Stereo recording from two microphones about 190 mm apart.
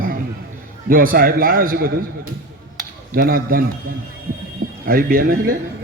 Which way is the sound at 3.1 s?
50° right (ahead or behind).